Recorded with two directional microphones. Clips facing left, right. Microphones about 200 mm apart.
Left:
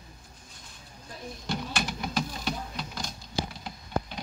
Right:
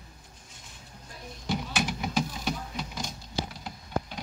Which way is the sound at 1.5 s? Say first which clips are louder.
Right 2 dB; 10° right (ahead or behind).